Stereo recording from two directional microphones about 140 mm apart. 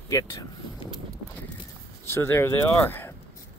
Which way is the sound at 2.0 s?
20° left (ahead or behind).